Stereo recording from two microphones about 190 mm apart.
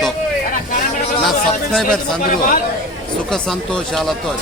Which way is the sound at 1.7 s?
5° left (ahead or behind).